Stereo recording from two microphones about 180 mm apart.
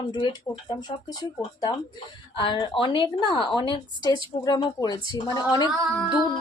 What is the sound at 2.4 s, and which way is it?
A woman's voice, 30° left (ahead or behind).